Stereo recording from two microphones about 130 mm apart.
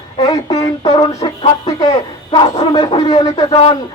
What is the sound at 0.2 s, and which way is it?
Speech, 30° left (ahead or behind).